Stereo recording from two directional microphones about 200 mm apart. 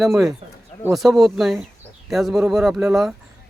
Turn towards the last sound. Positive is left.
turn(degrees=0)  # may be behind; listen again after turning